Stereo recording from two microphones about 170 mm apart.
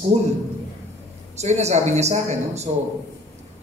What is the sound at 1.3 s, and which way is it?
A man's voice, 40° right (ahead or behind).